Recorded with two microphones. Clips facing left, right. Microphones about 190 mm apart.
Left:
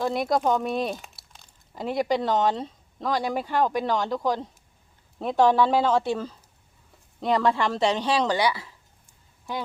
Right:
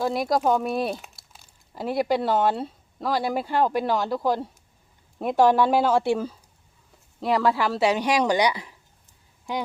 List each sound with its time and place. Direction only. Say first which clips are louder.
0.0 s speech: right 1 dB; centre (ahead or behind); by 8.7 s 15° right (ahead or behind)